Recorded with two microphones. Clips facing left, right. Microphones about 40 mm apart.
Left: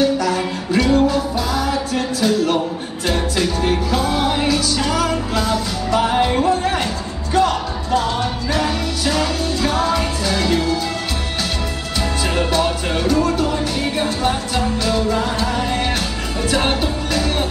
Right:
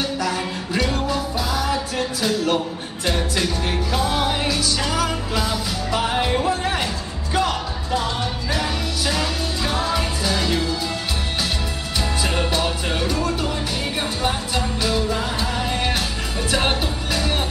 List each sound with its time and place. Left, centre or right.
0.0 s music: centre
12.4 s music: centre